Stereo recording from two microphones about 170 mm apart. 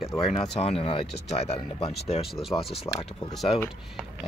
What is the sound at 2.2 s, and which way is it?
Speech, centre (ahead or behind).